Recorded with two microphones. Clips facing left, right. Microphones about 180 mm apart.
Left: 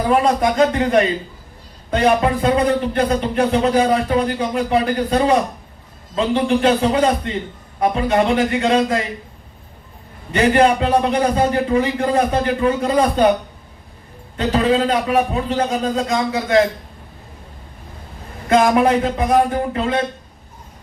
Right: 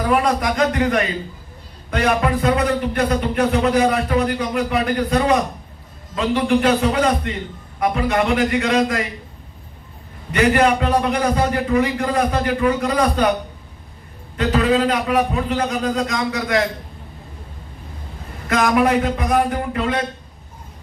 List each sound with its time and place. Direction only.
0.0 s speech: 25° left (ahead or behind)
10.3 s speech: 30° left (ahead or behind)
14.3 s speech: 30° left (ahead or behind)
18.4 s speech: 30° left (ahead or behind)